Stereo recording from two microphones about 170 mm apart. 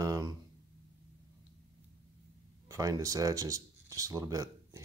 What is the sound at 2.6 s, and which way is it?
Speech, 20° right (ahead or behind).